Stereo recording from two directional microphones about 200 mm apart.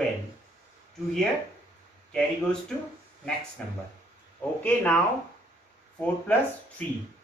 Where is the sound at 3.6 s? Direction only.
5° left (ahead or behind).